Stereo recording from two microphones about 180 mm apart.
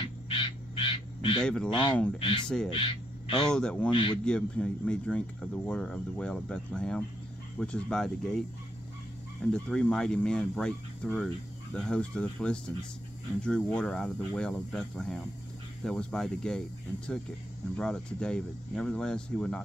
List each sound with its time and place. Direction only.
0.0 s frog: 30° left (ahead or behind)
1.4 s speech: 5° left (ahead or behind)
1.7 s a man's voice: 25° left (ahead or behind)
2.4 s speech: 5° left (ahead or behind)
2.7 s speech: 30° left (ahead or behind)
3.4 s speech: 5° left (ahead or behind)
3.9 s a man's voice: 25° left (ahead or behind)
4.2 s speech: 5° left (ahead or behind)
9.5 s speech: 5° left (ahead or behind)